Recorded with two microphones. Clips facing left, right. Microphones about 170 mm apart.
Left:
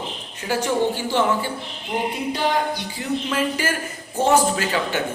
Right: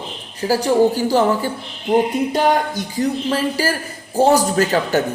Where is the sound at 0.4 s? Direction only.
35° right (ahead or behind).